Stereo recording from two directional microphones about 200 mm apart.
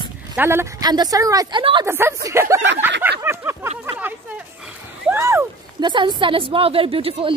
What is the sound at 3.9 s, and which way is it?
Speech, 10° right (ahead or behind).